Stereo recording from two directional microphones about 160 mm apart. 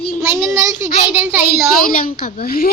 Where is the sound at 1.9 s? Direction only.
65° left (ahead or behind).